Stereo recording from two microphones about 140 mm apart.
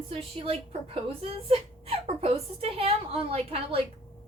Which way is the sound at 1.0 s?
45° right (ahead or behind).